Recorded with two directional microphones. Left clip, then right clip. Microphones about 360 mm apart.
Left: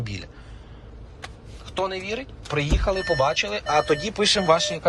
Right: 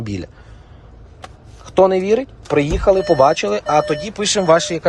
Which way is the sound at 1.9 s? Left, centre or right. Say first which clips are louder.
Right 14 dB; right.